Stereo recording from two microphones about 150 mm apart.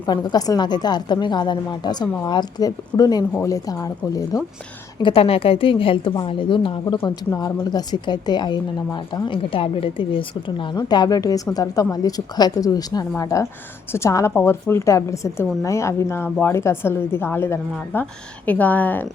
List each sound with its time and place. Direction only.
0.0 s speech: 30° left (ahead or behind)
5.0 s a woman's voice: 40° left (ahead or behind)
7.0 s a woman's voice: 15° left (ahead or behind)